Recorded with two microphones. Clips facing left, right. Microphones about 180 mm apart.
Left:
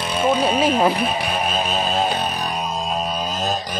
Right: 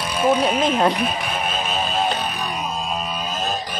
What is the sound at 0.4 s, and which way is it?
Speech, 5° left (ahead or behind).